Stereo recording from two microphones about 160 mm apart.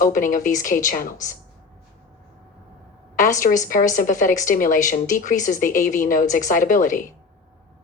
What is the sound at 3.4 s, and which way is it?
Speech, 55° left (ahead or behind).